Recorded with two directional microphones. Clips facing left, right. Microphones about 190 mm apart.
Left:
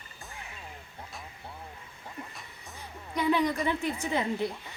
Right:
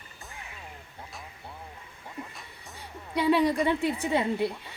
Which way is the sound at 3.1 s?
30° right (ahead or behind).